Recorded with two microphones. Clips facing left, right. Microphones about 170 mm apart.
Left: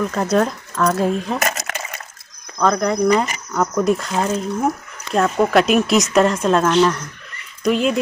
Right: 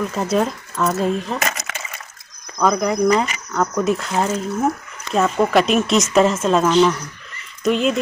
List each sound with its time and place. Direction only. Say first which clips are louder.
0.1 s speech: left 2 dB; 5° right (ahead or behind)
1.7 s water: left 3 dB; 50° left (ahead or behind)
2.6 s speech: even; 5° right (ahead or behind)